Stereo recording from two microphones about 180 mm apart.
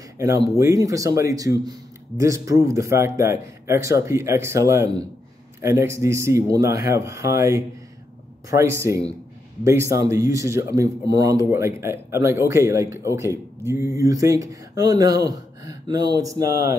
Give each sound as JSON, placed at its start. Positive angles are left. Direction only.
{"t": 0.6, "sound": "speech", "side_deg": -20}